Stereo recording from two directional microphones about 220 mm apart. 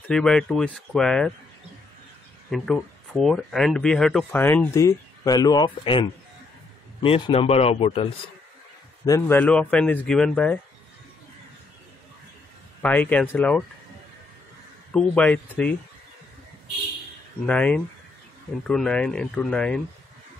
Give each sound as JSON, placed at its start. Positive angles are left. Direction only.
{"t": 0.1, "sound": "speech", "side_deg": 5}
{"t": 2.5, "sound": "speech", "side_deg": 0}
{"t": 9.0, "sound": "speech", "side_deg": 10}
{"t": 12.8, "sound": "speech", "side_deg": 5}
{"t": 14.9, "sound": "speech", "side_deg": 5}
{"t": 17.5, "sound": "speech", "side_deg": 5}